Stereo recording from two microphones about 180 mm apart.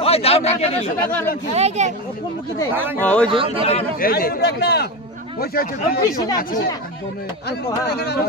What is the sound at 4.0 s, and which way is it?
A man's voice, 55° left (ahead or behind).